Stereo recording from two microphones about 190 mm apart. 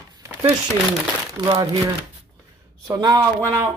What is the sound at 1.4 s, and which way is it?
Speech, 25° right (ahead or behind).